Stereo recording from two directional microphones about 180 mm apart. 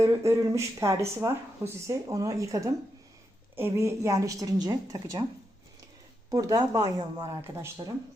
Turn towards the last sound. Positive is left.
turn(degrees=-15)  # may be behind; listen again after turning